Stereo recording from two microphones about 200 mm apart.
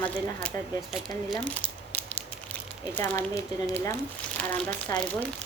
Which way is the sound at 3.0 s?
15° left (ahead or behind).